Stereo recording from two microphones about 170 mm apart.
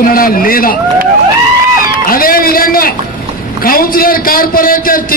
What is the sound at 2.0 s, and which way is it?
A man's voice, 60° left (ahead or behind).